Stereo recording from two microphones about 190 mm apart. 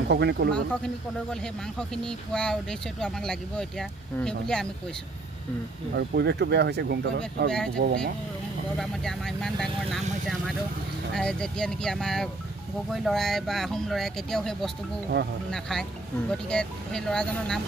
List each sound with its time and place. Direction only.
0.1 s speech: 60° right (ahead or behind)
0.5 s speech: 5° left (ahead or behind)
5.9 s speech: 65° right (ahead or behind)
8.7 s speech: centre (ahead or behind)
16.3 s speech: 5° left (ahead or behind)